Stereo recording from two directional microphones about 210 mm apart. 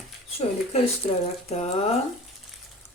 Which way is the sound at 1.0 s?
30° left (ahead or behind).